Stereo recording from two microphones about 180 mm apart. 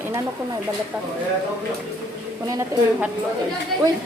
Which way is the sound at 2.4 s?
20° right (ahead or behind).